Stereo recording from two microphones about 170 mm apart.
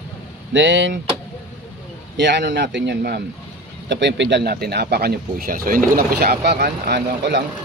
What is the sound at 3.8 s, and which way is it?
Speech, 90° right.